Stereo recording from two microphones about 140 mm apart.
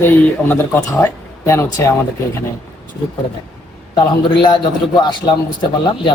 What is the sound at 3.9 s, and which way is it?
A man's voice, 35° left (ahead or behind).